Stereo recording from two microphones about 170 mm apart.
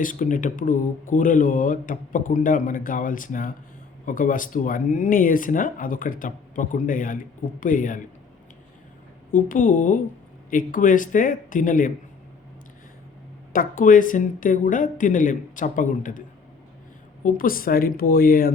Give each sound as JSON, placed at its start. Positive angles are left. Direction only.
{"t": 0.0, "sound": "speech", "side_deg": 50}
{"t": 9.3, "sound": "speech", "side_deg": 50}
{"t": 13.5, "sound": "speech", "side_deg": 55}
{"t": 17.2, "sound": "speech", "side_deg": 55}